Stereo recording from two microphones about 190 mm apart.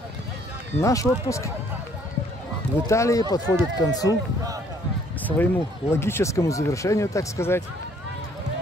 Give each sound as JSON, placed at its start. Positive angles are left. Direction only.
{"t": 0.7, "sound": "speech", "side_deg": 15}
{"t": 2.9, "sound": "speech", "side_deg": 15}
{"t": 5.2, "sound": "speech", "side_deg": 10}